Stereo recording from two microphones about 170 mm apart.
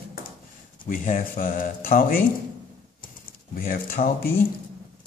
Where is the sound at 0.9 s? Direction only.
55° left (ahead or behind).